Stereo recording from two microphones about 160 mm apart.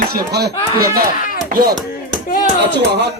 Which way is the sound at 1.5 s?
70° right (ahead or behind).